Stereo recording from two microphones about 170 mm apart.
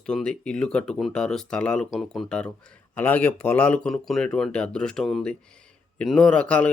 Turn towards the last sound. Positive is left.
turn(degrees=5)  # may be behind; listen again after turning